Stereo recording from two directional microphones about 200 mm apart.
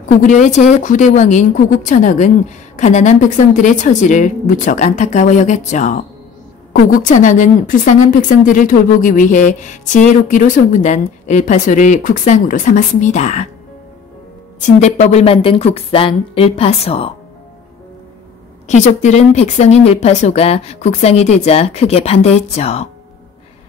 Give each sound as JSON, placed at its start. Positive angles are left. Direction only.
{"t": 0.3, "sound": "a woman's voice", "side_deg": 35}
{"t": 14.6, "sound": "speech", "side_deg": 35}
{"t": 18.7, "sound": "a woman's voice", "side_deg": 35}